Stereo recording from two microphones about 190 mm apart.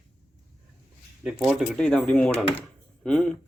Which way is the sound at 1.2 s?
Centre (ahead or behind).